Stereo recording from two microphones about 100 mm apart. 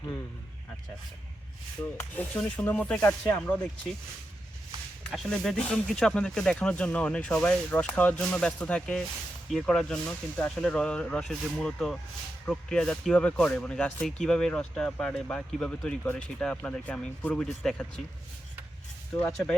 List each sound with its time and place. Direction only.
1.8 s rub: 20° left (ahead or behind)
2.6 s speech: 15° left (ahead or behind)
5.1 s speech: centre (ahead or behind)